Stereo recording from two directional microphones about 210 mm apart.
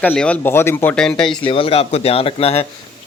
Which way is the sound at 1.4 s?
25° left (ahead or behind).